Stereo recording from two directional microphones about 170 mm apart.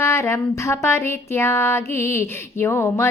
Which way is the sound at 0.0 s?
15° left (ahead or behind).